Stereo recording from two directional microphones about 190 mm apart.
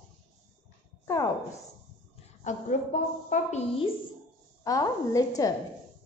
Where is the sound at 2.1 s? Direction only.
40° left (ahead or behind).